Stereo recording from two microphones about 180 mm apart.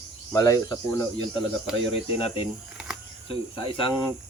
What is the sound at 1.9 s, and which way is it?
Speech, 35° left (ahead or behind).